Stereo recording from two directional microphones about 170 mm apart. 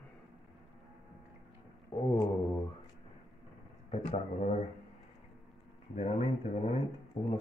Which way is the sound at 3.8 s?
40° left (ahead or behind).